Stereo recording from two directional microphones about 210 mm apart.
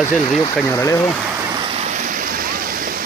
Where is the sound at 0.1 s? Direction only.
5° left (ahead or behind).